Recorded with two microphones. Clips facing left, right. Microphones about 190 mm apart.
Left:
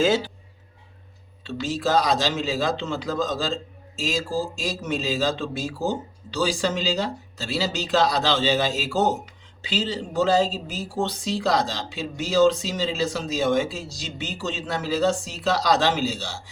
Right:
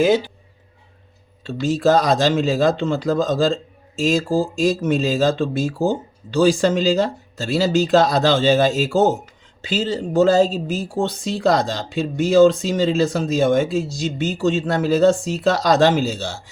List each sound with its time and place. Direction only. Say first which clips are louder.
1.5 s speech: right 8 dB; 50° right (ahead or behind)